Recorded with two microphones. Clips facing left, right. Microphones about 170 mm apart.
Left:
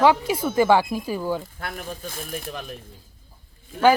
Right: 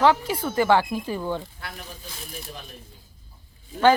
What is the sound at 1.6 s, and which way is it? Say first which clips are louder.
Speech: left 7 dB; 55° left (ahead or behind).